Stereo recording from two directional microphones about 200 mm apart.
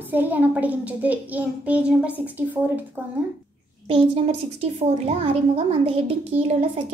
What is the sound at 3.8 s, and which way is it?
A woman's voice, 25° right (ahead or behind).